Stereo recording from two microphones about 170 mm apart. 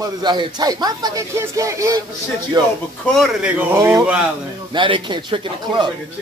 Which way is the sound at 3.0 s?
Centre (ahead or behind).